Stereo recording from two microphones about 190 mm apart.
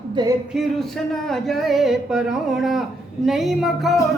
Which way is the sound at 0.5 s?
Centre (ahead or behind).